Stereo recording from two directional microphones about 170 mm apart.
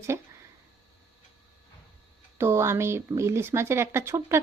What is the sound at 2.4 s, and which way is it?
Speech, 15° right (ahead or behind).